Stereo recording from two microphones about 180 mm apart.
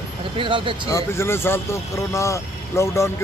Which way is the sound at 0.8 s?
15° left (ahead or behind).